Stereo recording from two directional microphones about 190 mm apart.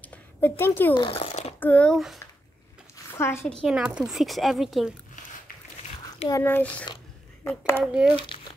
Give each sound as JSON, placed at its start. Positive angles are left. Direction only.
{"t": 0.0, "sound": "a sound", "side_deg": 10}
{"t": 0.9, "sound": "a sound", "side_deg": 30}
{"t": 1.6, "sound": "speech", "side_deg": 5}
{"t": 3.2, "sound": "a woman's voice", "side_deg": 15}
{"t": 3.6, "sound": "speech", "side_deg": -5}
{"t": 6.1, "sound": "a sound", "side_deg": 20}
{"t": 6.4, "sound": "a woman's voice", "side_deg": 10}
{"t": 7.8, "sound": "speech", "side_deg": -5}
{"t": 8.3, "sound": "crumpling", "side_deg": 25}